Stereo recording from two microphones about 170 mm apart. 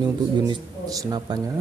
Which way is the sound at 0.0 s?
25° right (ahead or behind).